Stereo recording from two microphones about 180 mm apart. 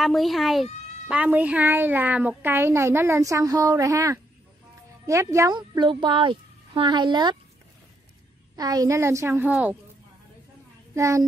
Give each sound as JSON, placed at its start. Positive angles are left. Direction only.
{"t": 0.0, "sound": "a woman's voice", "side_deg": 0}
{"t": 8.5, "sound": "a woman's voice", "side_deg": -20}
{"t": 11.0, "sound": "a woman's voice", "side_deg": -15}